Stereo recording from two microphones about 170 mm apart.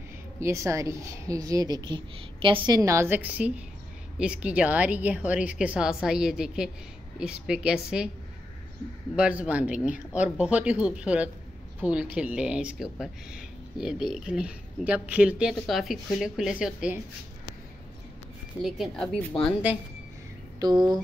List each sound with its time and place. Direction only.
0.4 s a woman's voice: 15° right (ahead or behind)
9.1 s a woman's voice: 5° right (ahead or behind)
18.6 s speech: centre (ahead or behind)
20.5 s speech: 25° right (ahead or behind)